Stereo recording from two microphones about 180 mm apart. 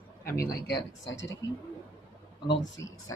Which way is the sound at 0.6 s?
80° left.